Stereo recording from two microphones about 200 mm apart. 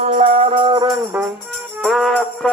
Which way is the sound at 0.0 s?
35° right (ahead or behind).